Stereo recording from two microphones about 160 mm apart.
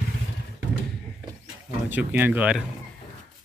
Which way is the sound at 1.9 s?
10° right (ahead or behind).